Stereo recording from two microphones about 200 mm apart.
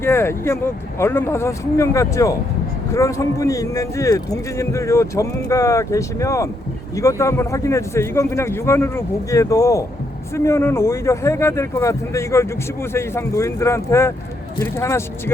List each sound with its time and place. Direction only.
0.0 s speech: 10° left (ahead or behind)